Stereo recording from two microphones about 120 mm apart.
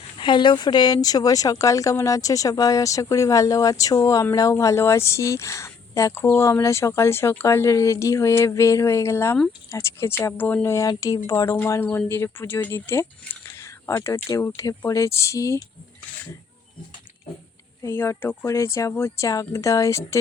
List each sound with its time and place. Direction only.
0.2 s speech: 40° left (ahead or behind); by 15.6 s 25° left (ahead or behind)
17.8 s speech: 20° left (ahead or behind)